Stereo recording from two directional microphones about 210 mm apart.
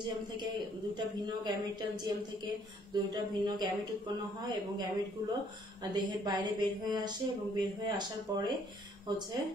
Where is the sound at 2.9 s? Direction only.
20° right (ahead or behind).